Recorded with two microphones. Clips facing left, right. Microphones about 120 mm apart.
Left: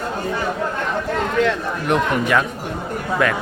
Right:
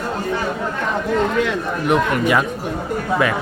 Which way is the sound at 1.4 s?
5° right (ahead or behind).